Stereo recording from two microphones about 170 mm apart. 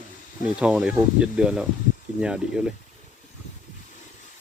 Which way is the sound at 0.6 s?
5° right (ahead or behind).